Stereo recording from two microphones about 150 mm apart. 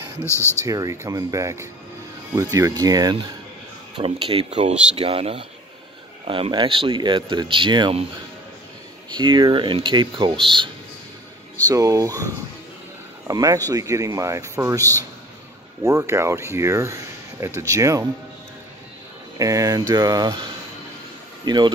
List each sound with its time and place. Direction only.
0.2 s speech: 20° left (ahead or behind)
0.7 s speech: 25° right (ahead or behind)
4.0 s speech: 40° right (ahead or behind)
9.1 s speech: 30° right (ahead or behind)
11.6 s speech: 25° right (ahead or behind)
13.3 s speech: 20° right (ahead or behind)
19.3 s speech: 20° right (ahead or behind)